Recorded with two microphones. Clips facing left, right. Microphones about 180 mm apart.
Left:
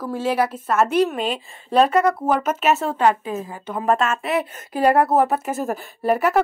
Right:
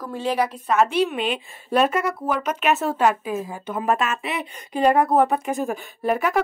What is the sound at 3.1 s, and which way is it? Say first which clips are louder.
A woman's voice: left 4 dB; 10° right (ahead or behind).